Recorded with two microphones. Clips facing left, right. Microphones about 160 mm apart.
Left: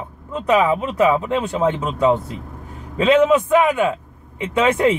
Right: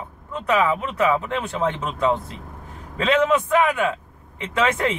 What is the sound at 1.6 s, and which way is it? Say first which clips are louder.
Speech: left 4 dB; 15° left (ahead or behind).